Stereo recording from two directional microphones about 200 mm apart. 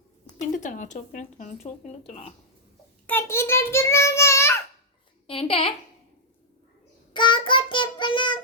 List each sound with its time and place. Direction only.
0.3 s speech: 40° left (ahead or behind)
3.1 s child singing: 10° left (ahead or behind)
5.2 s a child's voice: 30° left (ahead or behind)
7.1 s child singing: 25° left (ahead or behind)